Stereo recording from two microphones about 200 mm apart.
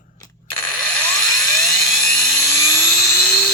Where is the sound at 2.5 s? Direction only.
15° left (ahead or behind).